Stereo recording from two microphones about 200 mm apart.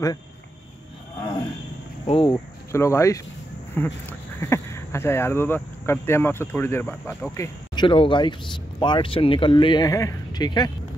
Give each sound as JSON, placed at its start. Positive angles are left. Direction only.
{"t": 2.0, "sound": "speech", "side_deg": 25}
{"t": 2.3, "sound": "speech", "side_deg": 15}